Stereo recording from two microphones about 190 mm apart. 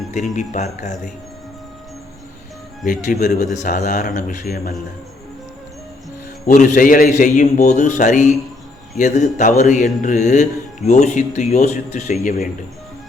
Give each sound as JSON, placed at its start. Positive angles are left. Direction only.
{"t": 0.3, "sound": "speech", "side_deg": 40}
{"t": 2.8, "sound": "speech", "side_deg": 45}
{"t": 6.4, "sound": "a man's voice", "side_deg": 40}